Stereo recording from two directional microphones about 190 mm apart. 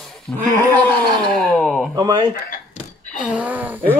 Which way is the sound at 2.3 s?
45° left (ahead or behind).